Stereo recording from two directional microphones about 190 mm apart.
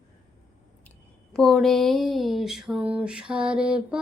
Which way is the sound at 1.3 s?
Centre (ahead or behind).